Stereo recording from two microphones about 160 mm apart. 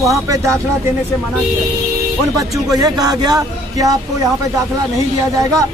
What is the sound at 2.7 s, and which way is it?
A man's voice, 25° right (ahead or behind).